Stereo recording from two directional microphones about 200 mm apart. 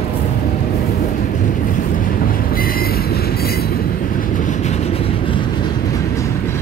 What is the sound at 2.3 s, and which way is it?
Train, 45° left (ahead or behind).